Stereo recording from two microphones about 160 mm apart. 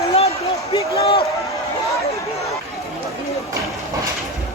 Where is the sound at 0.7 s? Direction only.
20° left (ahead or behind).